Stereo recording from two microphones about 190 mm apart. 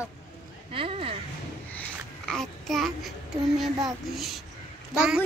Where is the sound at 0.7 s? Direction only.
30° right (ahead or behind).